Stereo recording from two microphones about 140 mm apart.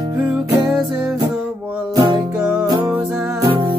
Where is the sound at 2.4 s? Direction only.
10° right (ahead or behind).